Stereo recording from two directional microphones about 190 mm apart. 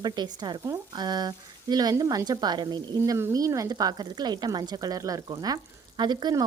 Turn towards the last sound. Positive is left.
turn(degrees=-20)  # may be behind; listen again after turning